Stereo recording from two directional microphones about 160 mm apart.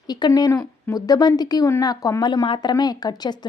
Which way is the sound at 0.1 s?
25° left (ahead or behind).